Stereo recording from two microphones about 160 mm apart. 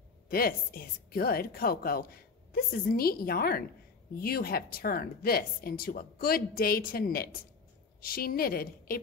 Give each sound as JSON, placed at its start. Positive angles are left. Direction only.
{"t": 0.3, "sound": "speech", "side_deg": 65}